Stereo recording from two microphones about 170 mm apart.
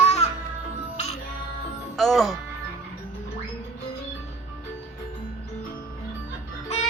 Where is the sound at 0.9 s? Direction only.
40° left (ahead or behind).